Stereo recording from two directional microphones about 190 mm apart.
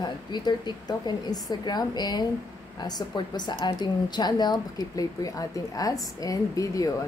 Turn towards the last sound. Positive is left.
turn(degrees=20)  # may be behind; listen again after turning